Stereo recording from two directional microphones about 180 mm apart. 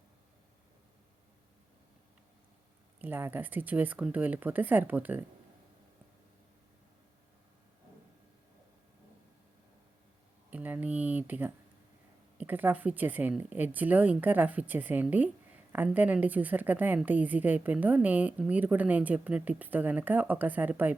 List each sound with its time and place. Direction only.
3.0 s a woman's voice: 10° right (ahead or behind)
10.5 s a sound: 10° right (ahead or behind)
12.4 s a woman's voice: 10° right (ahead or behind)